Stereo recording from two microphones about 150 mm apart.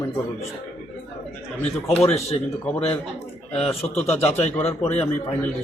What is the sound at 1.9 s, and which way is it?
A man's voice, 45° left (ahead or behind).